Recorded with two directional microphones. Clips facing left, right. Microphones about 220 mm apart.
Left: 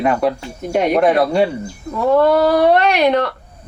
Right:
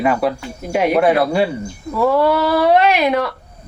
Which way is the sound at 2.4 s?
50° left (ahead or behind).